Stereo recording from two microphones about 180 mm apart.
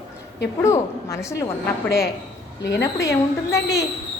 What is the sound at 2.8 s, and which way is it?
Speech, 15° left (ahead or behind).